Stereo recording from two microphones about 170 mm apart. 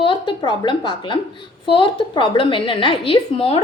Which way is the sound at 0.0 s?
30° left (ahead or behind).